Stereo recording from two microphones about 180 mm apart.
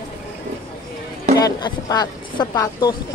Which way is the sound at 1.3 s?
20° left (ahead or behind).